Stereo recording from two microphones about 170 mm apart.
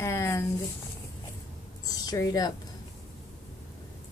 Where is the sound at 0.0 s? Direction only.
15° left (ahead or behind).